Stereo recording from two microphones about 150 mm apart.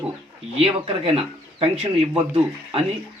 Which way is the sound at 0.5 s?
40° right (ahead or behind).